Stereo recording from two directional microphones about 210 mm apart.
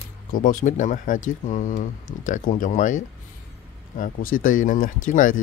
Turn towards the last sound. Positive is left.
turn(degrees=40)  # may be behind; listen again after turning